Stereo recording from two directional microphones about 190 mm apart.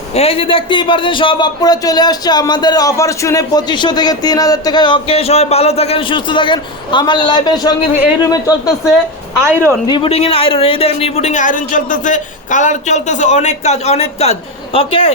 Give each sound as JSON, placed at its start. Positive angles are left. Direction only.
{"t": 0.1, "sound": "a man's voice", "side_deg": 30}
{"t": 9.5, "sound": "speech", "side_deg": -15}
{"t": 9.8, "sound": "a man's voice", "side_deg": 25}